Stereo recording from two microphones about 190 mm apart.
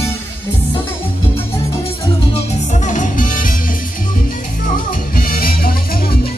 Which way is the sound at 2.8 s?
40° left (ahead or behind).